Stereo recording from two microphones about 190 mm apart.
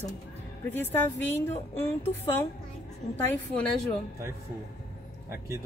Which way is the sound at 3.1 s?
10° left (ahead or behind).